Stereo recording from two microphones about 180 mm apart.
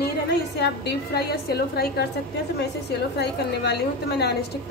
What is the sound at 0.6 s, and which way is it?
A woman's voice, 65° left (ahead or behind).